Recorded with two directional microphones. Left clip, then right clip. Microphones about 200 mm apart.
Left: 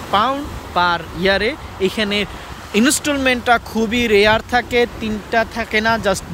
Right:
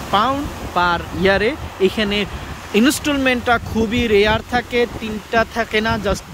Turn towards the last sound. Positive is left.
turn(degrees=-5)  # may be behind; listen again after turning